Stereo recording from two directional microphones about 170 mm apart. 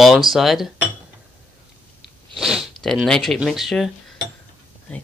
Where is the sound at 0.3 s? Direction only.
Centre (ahead or behind).